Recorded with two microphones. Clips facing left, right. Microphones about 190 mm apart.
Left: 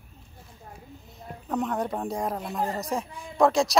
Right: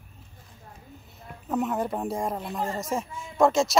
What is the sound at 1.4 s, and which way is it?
Speech, 5° right (ahead or behind).